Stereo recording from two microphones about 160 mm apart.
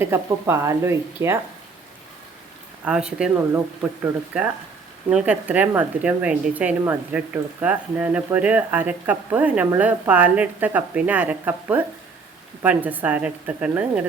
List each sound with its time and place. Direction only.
0.0 s speech: 15° right (ahead or behind)
2.8 s speech: 5° right (ahead or behind)